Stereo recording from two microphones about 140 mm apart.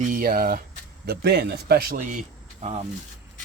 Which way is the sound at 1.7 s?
90° right.